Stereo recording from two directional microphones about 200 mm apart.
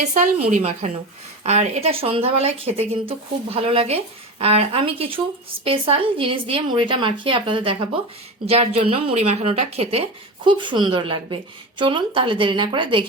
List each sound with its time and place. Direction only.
0.0 s a woman's voice: 35° right (ahead or behind)